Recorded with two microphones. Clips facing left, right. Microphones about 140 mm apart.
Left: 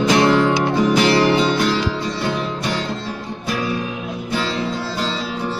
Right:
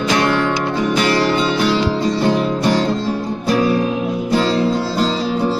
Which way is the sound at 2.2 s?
40° right (ahead or behind).